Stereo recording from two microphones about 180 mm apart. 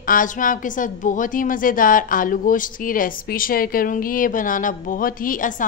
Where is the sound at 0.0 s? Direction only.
50° left (ahead or behind).